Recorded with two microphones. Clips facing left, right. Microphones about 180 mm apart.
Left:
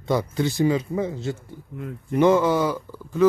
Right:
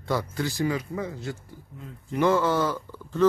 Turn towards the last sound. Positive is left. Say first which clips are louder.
# left 3 dB
turn(degrees=10)  # may be behind; listen again after turning